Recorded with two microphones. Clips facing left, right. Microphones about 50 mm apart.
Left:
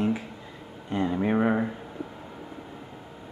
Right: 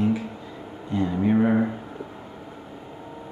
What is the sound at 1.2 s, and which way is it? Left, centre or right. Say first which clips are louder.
Speech: right 4 dB; centre.